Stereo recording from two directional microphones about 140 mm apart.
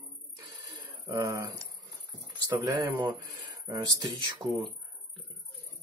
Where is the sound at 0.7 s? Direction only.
25° right (ahead or behind).